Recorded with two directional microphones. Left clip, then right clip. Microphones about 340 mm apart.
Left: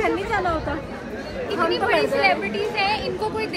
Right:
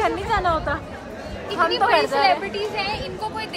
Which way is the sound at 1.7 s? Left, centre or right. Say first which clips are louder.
Right 2 dB; right.